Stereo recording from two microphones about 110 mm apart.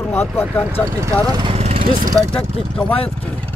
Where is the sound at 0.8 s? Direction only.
25° right (ahead or behind).